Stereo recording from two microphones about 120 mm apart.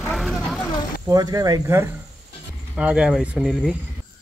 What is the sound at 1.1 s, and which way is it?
Speech, 30° right (ahead or behind).